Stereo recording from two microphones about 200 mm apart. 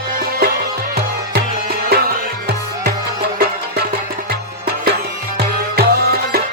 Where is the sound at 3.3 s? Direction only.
45° right (ahead or behind).